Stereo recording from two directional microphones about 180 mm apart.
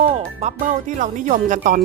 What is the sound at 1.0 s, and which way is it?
Speech, 45° right (ahead or behind).